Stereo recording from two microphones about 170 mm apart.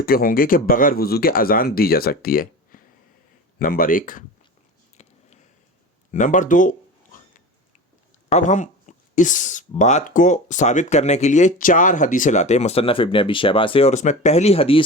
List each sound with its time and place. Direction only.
0.0 s speech: 60° left (ahead or behind)
4.9 s a sound: 40° left (ahead or behind)
6.1 s speech: 50° left (ahead or behind)
8.3 s speech: 45° left (ahead or behind)